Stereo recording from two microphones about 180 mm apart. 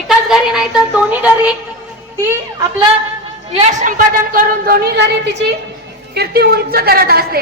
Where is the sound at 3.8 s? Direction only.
50° right (ahead or behind).